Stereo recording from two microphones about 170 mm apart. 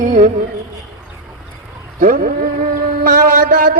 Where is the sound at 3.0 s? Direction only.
60° right (ahead or behind).